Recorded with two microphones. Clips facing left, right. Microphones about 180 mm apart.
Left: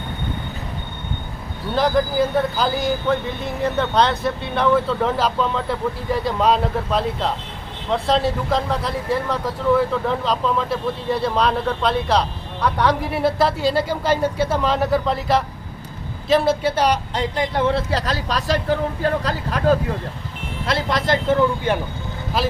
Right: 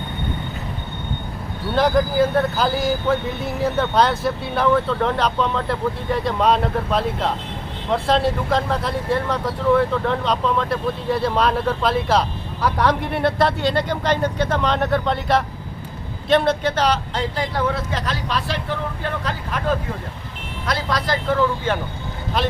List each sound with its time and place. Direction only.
1.7 s speech: centre (ahead or behind); by 19.7 s 35° left (ahead or behind)
20.7 s speech: 25° left (ahead or behind)
22.4 s speech: 5° left (ahead or behind)